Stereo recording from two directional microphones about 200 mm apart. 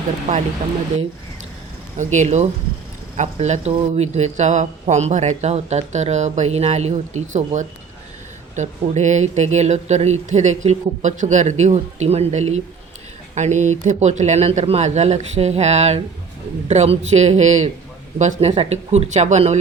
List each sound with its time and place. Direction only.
2.0 s speech: 35° right (ahead or behind)